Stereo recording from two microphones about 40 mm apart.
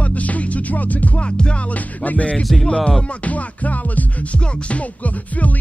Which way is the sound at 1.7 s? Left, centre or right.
Left.